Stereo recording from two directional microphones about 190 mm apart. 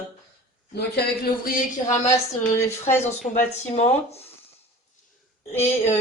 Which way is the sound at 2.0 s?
15° left (ahead or behind).